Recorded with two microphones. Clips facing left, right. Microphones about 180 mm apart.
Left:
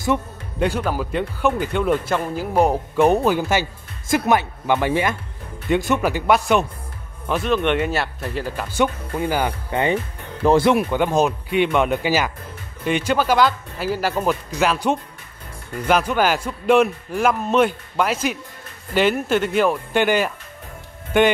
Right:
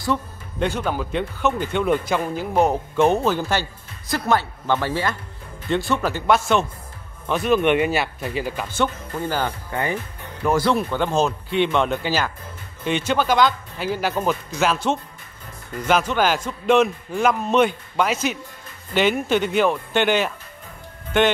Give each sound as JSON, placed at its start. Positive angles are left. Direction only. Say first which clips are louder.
{"t": 0.6, "sound": "a man's voice", "louder": "left 2 dB", "side_deg": 5}
{"t": 7.2, "sound": "a man's voice", "louder": "right 1 dB", "side_deg": 0}
{"t": 8.7, "sound": "speech", "louder": "left 4 dB", "side_deg": 15}
{"t": 10.7, "sound": "a man's voice", "louder": "left 3 dB", "side_deg": 10}
{"t": 15.9, "sound": "a man's voice", "louder": "left 1 dB", "side_deg": 5}